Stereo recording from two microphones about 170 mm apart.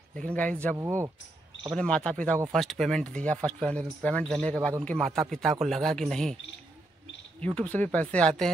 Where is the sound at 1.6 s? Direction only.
5° left (ahead or behind).